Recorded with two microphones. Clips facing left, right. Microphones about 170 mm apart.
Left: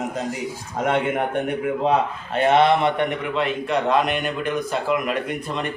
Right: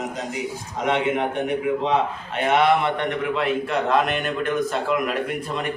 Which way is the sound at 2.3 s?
30° left (ahead or behind).